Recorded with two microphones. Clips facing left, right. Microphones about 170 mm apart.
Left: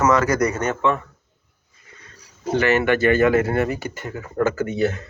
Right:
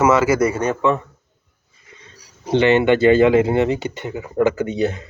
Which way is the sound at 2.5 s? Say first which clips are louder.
Right 4 dB; 20° right (ahead or behind).